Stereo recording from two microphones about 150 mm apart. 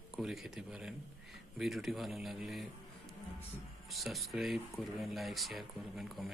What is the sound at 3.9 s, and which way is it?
Speech, centre (ahead or behind).